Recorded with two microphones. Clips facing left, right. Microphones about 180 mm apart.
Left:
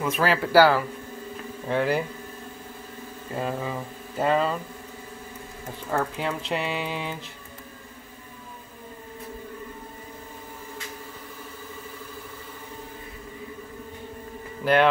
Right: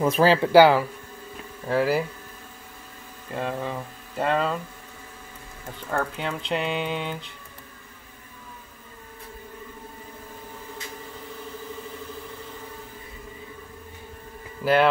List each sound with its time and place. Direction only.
0.0 s speech: 30° right (ahead or behind)
1.7 s speech: 5° right (ahead or behind)
3.3 s speech: 5° left (ahead or behind)
6.1 s speech: 5° left (ahead or behind)
14.6 s a sound: 5° right (ahead or behind)